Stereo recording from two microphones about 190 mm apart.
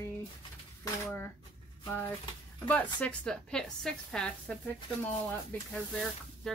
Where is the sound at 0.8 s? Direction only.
10° left (ahead or behind).